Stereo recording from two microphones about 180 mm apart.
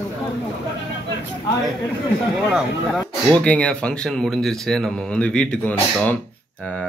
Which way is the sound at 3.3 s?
5° left (ahead or behind).